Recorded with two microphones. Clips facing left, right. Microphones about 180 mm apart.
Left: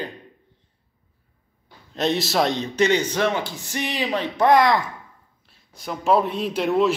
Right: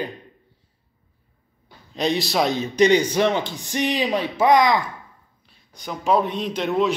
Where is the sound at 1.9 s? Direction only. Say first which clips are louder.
Even; centre (ahead or behind).